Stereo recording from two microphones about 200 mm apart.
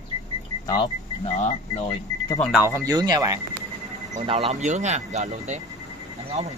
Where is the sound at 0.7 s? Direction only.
25° left (ahead or behind).